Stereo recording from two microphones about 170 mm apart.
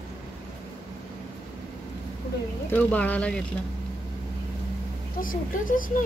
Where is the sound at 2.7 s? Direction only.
10° left (ahead or behind).